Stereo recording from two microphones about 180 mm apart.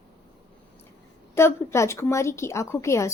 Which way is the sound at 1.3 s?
15° left (ahead or behind).